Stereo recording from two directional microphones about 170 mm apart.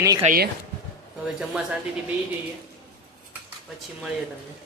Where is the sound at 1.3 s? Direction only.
5° right (ahead or behind).